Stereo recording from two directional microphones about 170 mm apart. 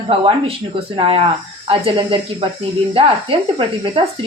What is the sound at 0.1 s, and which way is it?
A woman's voice, 35° right (ahead or behind).